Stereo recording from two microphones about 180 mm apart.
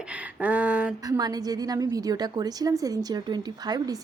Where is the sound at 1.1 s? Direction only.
20° right (ahead or behind).